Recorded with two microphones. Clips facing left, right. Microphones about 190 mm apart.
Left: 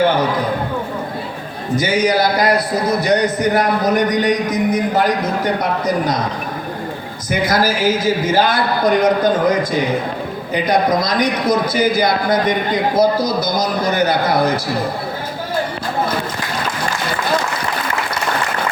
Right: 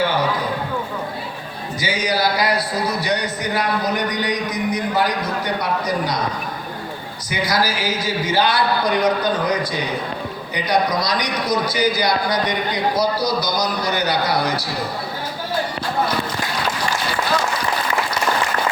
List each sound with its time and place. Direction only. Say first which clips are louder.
1.8 s a man's voice: left 5 dB; 50° left (ahead or behind)
7.3 s a man's voice: left 5 dB; 50° left (ahead or behind)